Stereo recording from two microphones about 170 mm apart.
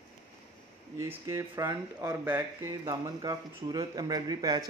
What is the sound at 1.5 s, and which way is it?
Speech, 25° right (ahead or behind).